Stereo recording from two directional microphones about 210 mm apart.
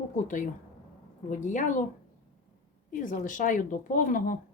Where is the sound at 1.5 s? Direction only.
35° left (ahead or behind).